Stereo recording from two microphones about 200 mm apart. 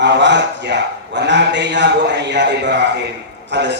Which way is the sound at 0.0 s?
60° right (ahead or behind).